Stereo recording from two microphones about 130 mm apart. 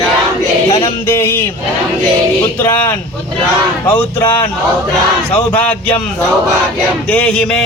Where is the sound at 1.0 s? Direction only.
20° left (ahead or behind).